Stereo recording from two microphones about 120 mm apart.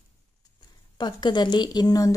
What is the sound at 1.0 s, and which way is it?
Speech, 40° left (ahead or behind).